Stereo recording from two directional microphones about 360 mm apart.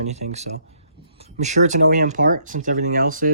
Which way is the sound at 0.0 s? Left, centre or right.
Centre.